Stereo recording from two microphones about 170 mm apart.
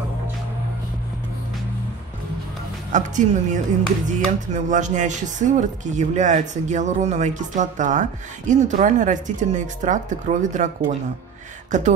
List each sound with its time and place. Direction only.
2.9 s speech: 45° right (ahead or behind)